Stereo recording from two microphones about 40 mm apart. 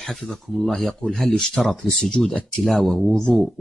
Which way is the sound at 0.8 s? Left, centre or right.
Centre.